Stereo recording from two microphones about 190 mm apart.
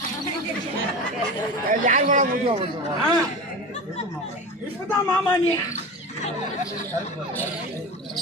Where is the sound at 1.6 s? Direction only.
45° right (ahead or behind).